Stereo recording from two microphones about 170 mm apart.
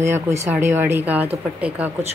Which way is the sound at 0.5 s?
15° right (ahead or behind).